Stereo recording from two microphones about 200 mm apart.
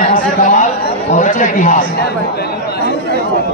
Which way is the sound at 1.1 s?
40° left (ahead or behind).